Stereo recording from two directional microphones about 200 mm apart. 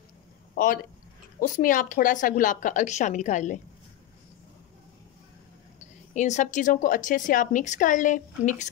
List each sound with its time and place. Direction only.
0.6 s a woman's voice: 45° left (ahead or behind)
6.1 s a woman's voice: 35° left (ahead or behind)